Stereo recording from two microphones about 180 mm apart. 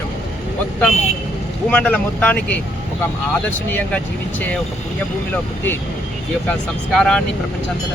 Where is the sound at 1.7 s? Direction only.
5° left (ahead or behind).